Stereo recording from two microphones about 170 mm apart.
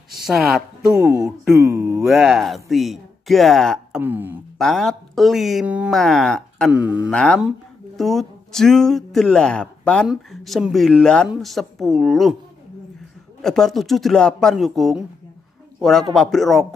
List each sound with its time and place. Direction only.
0.9 s speech: 20° right (ahead or behind)
2.0 s speech: centre (ahead or behind)
4.0 s speech: 10° right (ahead or behind)
4.6 s speech: centre (ahead or behind)
6.7 s speech: 10° right (ahead or behind)
7.1 s speech: 5° left (ahead or behind)
13.4 s speech: centre (ahead or behind)